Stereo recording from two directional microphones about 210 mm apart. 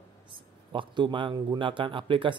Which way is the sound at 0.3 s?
25° right (ahead or behind).